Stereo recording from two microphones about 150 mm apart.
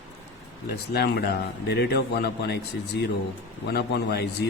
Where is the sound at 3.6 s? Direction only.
90° left.